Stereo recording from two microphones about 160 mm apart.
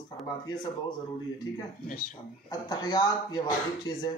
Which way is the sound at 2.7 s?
25° left (ahead or behind).